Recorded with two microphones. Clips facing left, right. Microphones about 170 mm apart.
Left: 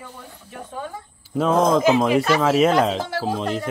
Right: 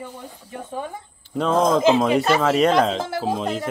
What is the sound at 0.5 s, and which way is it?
Speech, 20° right (ahead or behind).